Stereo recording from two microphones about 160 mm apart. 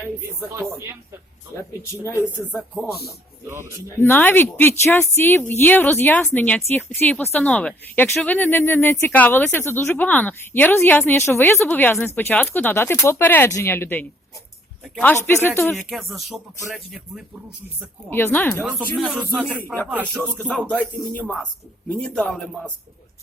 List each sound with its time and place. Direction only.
2.6 s speech: 5° right (ahead or behind)
3.8 s speech: 15° left (ahead or behind)
15.7 s speech: centre (ahead or behind)
18.1 s speech: 15° left (ahead or behind)
18.6 s speech: 5° right (ahead or behind)
19.6 s speech: 15° left (ahead or behind)
19.9 s speech: 10° right (ahead or behind)
20.4 s speech: 5° left (ahead or behind)